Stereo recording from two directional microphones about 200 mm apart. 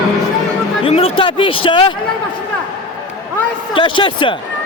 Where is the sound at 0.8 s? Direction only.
30° left (ahead or behind).